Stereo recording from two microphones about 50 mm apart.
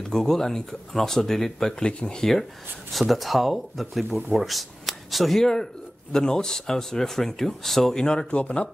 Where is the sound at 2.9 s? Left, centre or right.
Centre.